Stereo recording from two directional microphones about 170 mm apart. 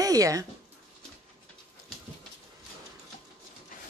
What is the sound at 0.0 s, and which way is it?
Speech, 20° right (ahead or behind).